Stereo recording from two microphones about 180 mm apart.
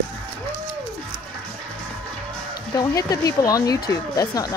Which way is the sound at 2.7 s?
20° left (ahead or behind).